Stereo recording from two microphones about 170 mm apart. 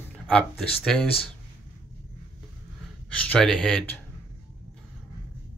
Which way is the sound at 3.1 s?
5° left (ahead or behind).